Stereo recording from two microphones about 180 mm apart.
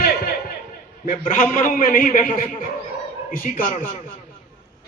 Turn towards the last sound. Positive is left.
turn(degrees=50)  # may be behind; listen again after turning